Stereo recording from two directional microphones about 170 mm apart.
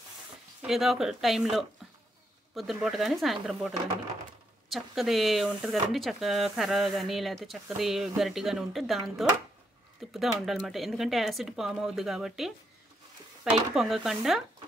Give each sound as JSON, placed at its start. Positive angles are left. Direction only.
{"t": 0.6, "sound": "speech", "side_deg": 0}
{"t": 10.1, "sound": "speech", "side_deg": 0}